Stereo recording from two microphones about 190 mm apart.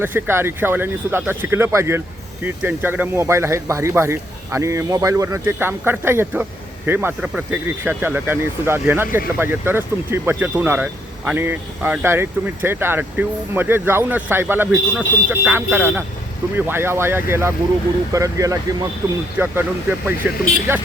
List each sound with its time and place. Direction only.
0.0 s speech: 10° right (ahead or behind)